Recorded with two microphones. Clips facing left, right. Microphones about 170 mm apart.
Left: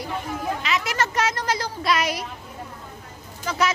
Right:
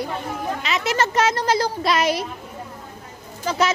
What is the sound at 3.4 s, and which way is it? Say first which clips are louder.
Speech: right 3 dB; 30° right (ahead or behind).